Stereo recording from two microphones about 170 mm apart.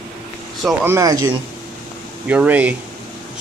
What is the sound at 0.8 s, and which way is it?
Speech, 15° right (ahead or behind).